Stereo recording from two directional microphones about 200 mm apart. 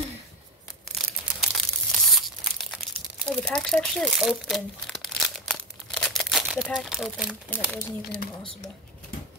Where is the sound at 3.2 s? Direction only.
Centre (ahead or behind).